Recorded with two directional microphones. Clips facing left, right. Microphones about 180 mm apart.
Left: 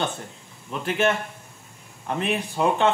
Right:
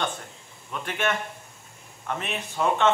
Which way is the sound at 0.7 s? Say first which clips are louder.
Left 5 dB; 30° left (ahead or behind).